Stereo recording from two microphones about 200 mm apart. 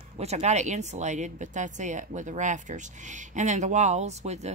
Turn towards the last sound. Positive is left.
turn(degrees=-35)  # may be behind; listen again after turning